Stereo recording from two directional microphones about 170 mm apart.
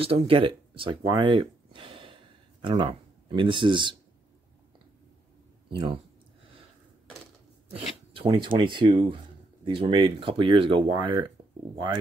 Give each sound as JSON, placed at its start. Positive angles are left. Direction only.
{"t": 0.0, "sound": "speech", "side_deg": -35}
{"t": 7.7, "sound": "speech", "side_deg": -30}